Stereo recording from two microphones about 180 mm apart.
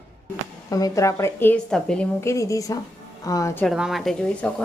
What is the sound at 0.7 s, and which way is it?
A woman's voice, 20° left (ahead or behind).